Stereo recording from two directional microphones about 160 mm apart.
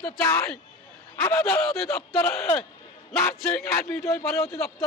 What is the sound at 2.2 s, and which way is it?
Speech, 15° left (ahead or behind).